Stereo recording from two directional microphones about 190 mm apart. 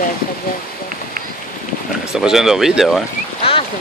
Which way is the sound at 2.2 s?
Centre (ahead or behind).